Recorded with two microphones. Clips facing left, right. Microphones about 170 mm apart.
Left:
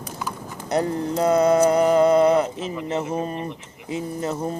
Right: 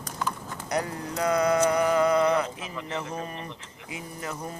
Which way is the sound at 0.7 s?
30° left (ahead or behind).